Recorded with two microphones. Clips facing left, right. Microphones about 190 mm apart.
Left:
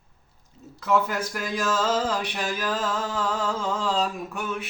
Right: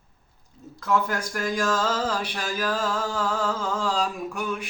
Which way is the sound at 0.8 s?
5° left (ahead or behind).